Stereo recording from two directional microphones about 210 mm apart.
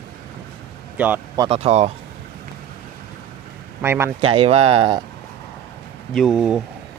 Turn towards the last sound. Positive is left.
turn(degrees=0)  # may be behind; listen again after turning